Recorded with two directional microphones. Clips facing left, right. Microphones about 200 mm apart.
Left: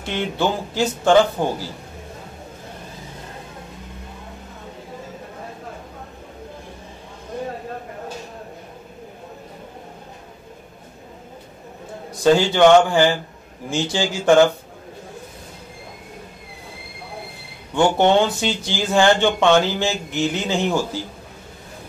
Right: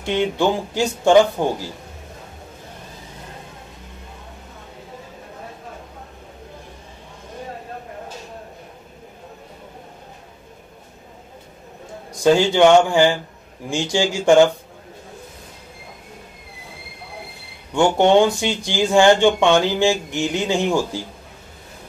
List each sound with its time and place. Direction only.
0.0 s speech: 15° right (ahead or behind)
12.2 s speech: 15° right (ahead or behind)
17.7 s speech: 15° right (ahead or behind)